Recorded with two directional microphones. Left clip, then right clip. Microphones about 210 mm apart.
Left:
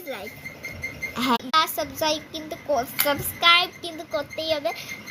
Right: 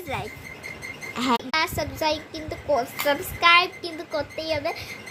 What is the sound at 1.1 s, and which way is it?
A woman's voice, 5° right (ahead or behind).